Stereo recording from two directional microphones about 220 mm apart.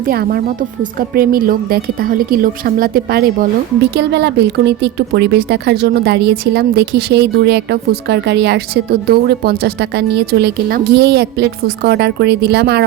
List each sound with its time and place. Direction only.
0.0 s speech: 40° right (ahead or behind)